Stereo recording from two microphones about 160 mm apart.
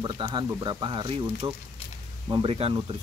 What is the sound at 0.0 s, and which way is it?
Speech, 30° right (ahead or behind).